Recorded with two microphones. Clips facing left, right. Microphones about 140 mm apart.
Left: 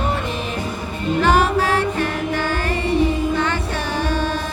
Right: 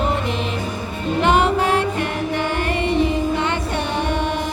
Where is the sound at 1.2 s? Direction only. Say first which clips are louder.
Right 1 dB; 20° right (ahead or behind).